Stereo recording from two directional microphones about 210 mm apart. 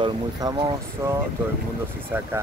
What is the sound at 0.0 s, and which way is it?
Speech, 20° right (ahead or behind).